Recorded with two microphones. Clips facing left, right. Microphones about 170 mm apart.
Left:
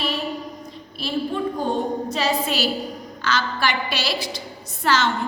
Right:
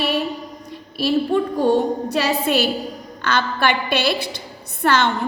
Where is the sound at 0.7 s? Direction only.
70° right (ahead or behind).